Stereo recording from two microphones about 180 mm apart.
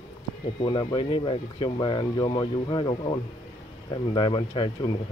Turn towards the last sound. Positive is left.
turn(degrees=30)  # may be behind; listen again after turning